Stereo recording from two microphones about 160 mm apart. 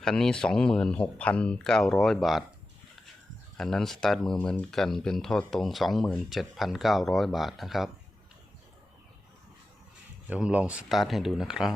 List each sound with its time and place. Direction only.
0.0 s speech: 5° left (ahead or behind)
3.6 s speech: 5° left (ahead or behind)
10.2 s speech: 10° right (ahead or behind)